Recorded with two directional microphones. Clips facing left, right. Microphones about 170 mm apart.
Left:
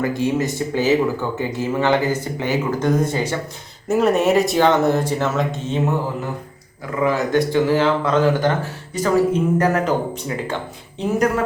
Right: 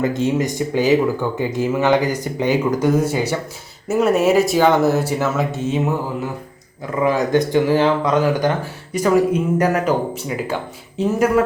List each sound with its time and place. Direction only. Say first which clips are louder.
0.0 s speech: right 1 dB; 20° right (ahead or behind)
7.0 s speech: right 1 dB; 20° right (ahead or behind)